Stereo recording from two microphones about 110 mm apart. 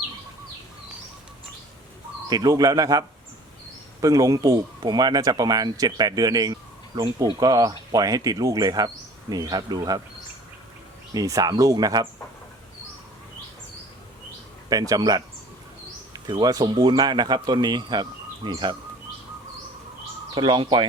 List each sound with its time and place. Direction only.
2.3 s speech: 35° right (ahead or behind)
4.0 s speech: 30° right (ahead or behind)
11.1 s speech: 30° right (ahead or behind)
14.7 s speech: 35° right (ahead or behind)
20.3 s speech: 45° right (ahead or behind)